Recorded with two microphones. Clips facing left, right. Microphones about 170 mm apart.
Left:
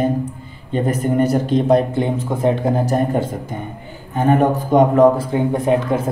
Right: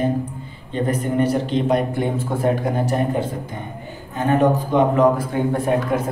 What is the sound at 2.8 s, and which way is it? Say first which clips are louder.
Speech: left 3 dB; 40° left (ahead or behind).